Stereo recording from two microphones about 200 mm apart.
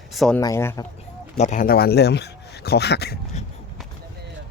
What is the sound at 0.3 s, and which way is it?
Speech, 15° left (ahead or behind).